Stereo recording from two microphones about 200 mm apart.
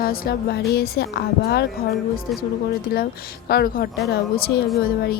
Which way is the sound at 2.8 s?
50° left (ahead or behind).